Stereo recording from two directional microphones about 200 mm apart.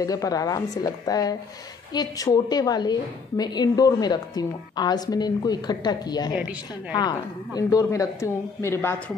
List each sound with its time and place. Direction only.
0.0 s a woman's voice: 15° left (ahead or behind)